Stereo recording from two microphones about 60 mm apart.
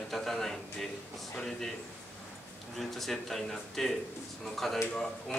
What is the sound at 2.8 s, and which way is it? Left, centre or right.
A man's voice, centre.